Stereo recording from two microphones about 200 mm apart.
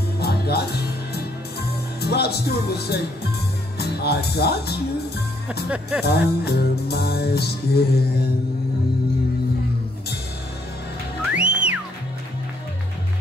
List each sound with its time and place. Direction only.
0.2 s music: 50° left (ahead or behind)
2.0 s speech: 55° left (ahead or behind)
5.7 s speech: 5° right (ahead or behind)
6.0 s music: 55° left (ahead or behind)
11.3 s music: 5° right (ahead or behind)